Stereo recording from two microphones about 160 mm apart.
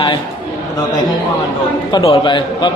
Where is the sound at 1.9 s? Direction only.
30° left (ahead or behind).